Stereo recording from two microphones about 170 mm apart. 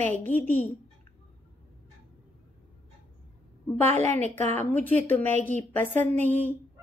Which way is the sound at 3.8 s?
40° right (ahead or behind).